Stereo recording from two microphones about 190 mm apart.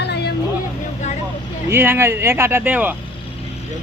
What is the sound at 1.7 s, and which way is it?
Speech, 10° right (ahead or behind).